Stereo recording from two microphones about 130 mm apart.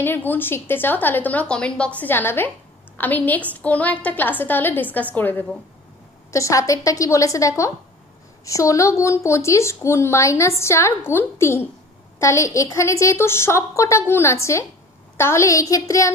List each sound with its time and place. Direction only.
0.0 s a woman's voice: 15° left (ahead or behind)